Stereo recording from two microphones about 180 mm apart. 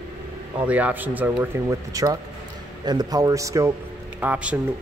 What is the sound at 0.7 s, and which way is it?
A man's voice, 10° right (ahead or behind).